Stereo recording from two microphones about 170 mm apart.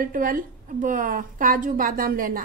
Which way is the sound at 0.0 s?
55° right (ahead or behind).